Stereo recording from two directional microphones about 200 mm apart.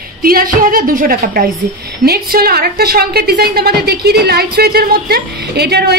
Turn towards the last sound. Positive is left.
turn(degrees=-55)  # may be behind; listen again after turning